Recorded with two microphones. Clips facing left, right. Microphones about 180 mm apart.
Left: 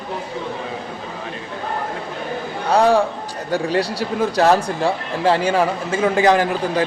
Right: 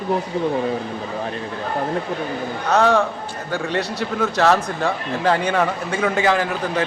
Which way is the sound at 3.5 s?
35° left (ahead or behind).